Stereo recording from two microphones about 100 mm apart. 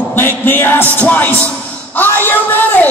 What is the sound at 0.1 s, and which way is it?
A man's voice, 20° left (ahead or behind).